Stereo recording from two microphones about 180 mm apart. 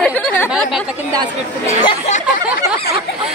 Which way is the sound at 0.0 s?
5° left (ahead or behind).